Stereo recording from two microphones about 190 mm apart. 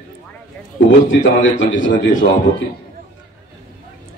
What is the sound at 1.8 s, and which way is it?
Speech, 80° left.